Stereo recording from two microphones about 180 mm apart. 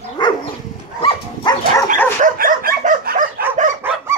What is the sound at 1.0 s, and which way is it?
Dog, 25° left (ahead or behind).